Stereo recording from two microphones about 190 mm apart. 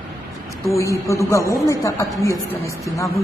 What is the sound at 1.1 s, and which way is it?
A woman's voice, 15° left (ahead or behind).